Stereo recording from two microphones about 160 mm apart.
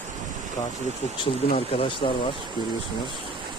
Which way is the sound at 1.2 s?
40° left (ahead or behind).